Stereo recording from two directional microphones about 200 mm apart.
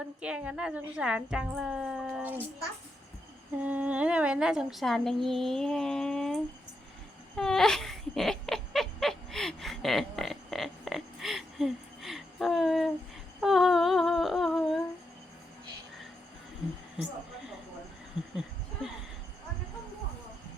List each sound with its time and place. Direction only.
0.2 s a woman's voice: 5° right (ahead or behind)
3.6 s a woman's voice: 10° right (ahead or behind)
7.3 s laughter: centre (ahead or behind)
13.4 s humming: centre (ahead or behind)